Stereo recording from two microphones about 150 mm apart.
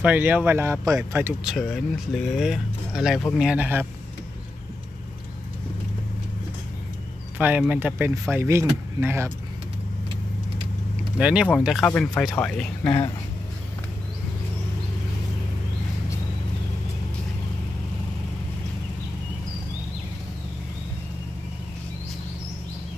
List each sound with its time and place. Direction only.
0.0 s speech: 10° right (ahead or behind)
1.4 s speech: centre (ahead or behind)
7.3 s speech: 10° right (ahead or behind)
11.1 s speech: 5° right (ahead or behind)
11.8 s speech: 10° left (ahead or behind)
12.8 s speech: 35° left (ahead or behind)